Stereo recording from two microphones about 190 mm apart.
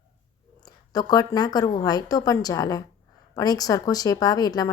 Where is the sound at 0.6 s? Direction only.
20° left (ahead or behind).